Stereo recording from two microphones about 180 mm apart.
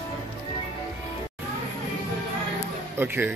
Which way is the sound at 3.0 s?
10° right (ahead or behind).